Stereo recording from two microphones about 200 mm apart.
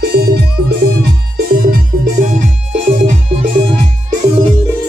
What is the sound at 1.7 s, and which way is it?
Music, 40° right (ahead or behind).